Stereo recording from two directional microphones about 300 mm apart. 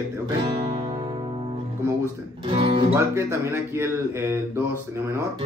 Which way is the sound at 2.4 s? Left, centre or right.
Centre.